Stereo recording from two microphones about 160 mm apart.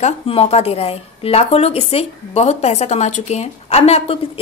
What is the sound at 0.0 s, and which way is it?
Speech, 40° left (ahead or behind).